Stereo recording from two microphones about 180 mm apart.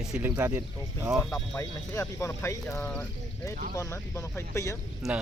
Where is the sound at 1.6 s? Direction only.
15° left (ahead or behind).